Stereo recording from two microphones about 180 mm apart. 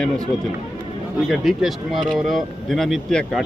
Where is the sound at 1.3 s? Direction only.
Centre (ahead or behind).